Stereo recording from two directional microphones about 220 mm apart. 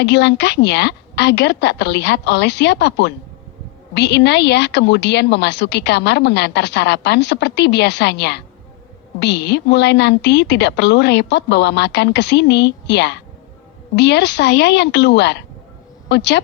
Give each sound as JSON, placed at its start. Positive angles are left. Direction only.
{"t": 0.0, "sound": "a woman's voice", "side_deg": 50}